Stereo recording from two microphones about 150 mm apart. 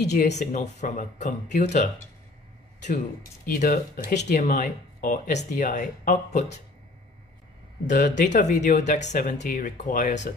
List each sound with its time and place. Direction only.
0.0 s speech: 50° left (ahead or behind)
3.5 s speech: 75° left (ahead or behind)
4.1 s speech: 50° left (ahead or behind)
7.8 s speech: 55° left (ahead or behind)